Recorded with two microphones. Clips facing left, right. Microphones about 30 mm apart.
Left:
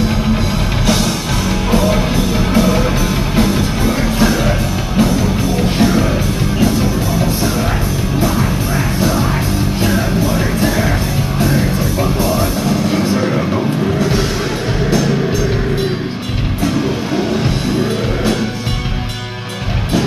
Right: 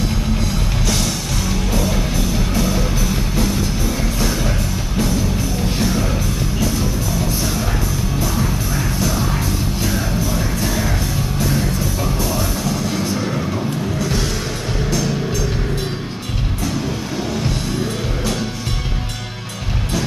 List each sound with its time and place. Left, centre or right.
1.7 s music: left
9.8 s music: left